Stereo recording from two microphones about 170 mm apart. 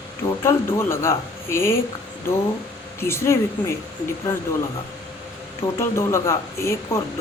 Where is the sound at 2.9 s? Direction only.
15° left (ahead or behind).